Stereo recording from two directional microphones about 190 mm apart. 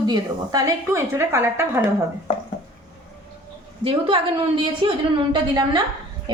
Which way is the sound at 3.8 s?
30° right (ahead or behind).